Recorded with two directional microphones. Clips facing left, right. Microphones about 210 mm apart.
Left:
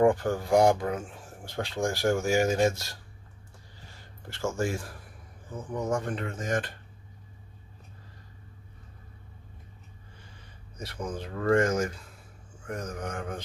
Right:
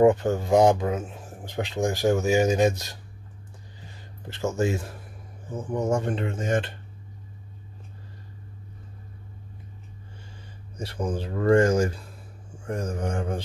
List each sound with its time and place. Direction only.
0.0 s speech: 20° right (ahead or behind)
4.3 s speech: 20° right (ahead or behind)
10.8 s speech: 30° right (ahead or behind)